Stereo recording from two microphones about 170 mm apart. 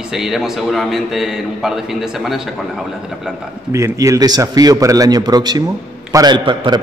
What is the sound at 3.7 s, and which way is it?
A man's voice, 20° right (ahead or behind).